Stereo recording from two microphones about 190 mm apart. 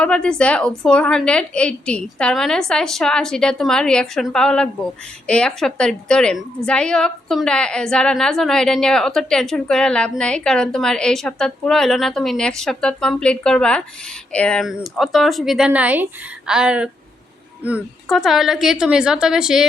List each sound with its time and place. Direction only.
0.0 s a woman's voice: 5° left (ahead or behind)